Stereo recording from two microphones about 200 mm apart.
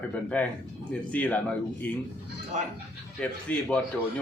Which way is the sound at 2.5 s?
35° right (ahead or behind).